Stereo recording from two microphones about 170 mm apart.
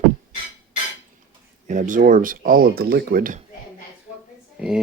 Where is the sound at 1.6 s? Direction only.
45° right (ahead or behind).